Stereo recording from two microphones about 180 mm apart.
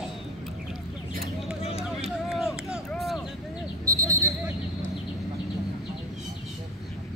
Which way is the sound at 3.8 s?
15° right (ahead or behind).